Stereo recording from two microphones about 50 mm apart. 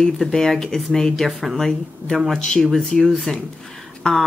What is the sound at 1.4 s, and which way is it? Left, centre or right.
Speech, centre.